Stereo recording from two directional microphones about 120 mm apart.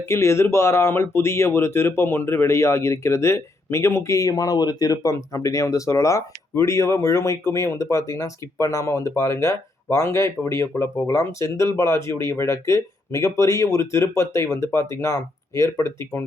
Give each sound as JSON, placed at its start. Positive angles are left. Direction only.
{"t": 0.1, "sound": "speech", "side_deg": 25}